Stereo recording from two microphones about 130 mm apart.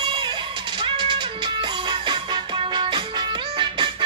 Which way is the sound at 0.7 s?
40° right (ahead or behind).